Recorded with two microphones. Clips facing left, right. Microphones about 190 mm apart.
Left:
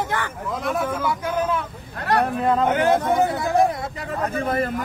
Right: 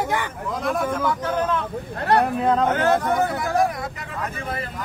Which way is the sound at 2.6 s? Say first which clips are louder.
Left 1 dB; 15° left (ahead or behind).